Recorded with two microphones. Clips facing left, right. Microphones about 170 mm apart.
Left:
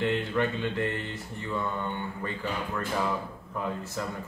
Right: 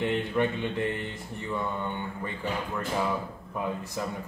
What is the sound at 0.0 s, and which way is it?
Speech, 15° right (ahead or behind).